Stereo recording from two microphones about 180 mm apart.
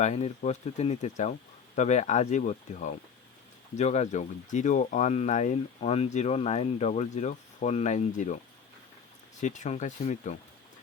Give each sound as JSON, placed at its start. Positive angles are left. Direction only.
{"t": 0.0, "sound": "speech", "side_deg": 40}
{"t": 9.4, "sound": "speech", "side_deg": 40}